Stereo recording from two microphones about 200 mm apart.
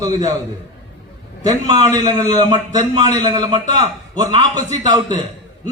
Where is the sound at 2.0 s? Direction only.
20° right (ahead or behind).